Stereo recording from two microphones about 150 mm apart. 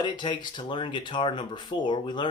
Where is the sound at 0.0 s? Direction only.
30° left (ahead or behind).